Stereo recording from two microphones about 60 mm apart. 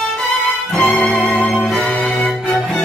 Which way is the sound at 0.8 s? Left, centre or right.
Centre.